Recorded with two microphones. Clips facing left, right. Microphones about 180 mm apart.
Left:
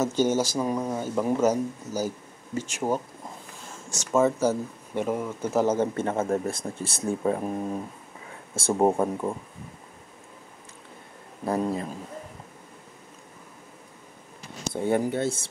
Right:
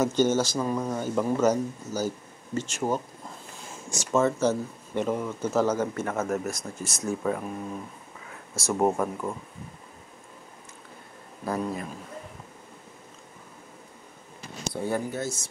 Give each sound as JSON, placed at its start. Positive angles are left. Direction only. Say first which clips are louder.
{"t": 0.0, "sound": "speech", "louder": "even", "side_deg": 5}
{"t": 4.1, "sound": "speech", "louder": "left 1 dB", "side_deg": 10}
{"t": 5.8, "sound": "speech", "louder": "left 3 dB", "side_deg": 30}
{"t": 11.4, "sound": "speech", "louder": "left 3 dB", "side_deg": 25}
{"t": 14.7, "sound": "speech", "louder": "left 5 dB", "side_deg": 25}